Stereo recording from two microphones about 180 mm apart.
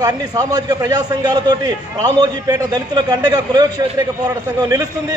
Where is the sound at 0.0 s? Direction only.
20° right (ahead or behind).